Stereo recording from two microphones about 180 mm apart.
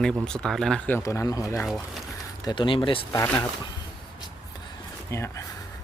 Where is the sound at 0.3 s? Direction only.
5° left (ahead or behind); by 3.1 s 30° left (ahead or behind).